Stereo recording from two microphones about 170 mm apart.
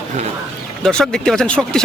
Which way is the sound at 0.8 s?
5° left (ahead or behind).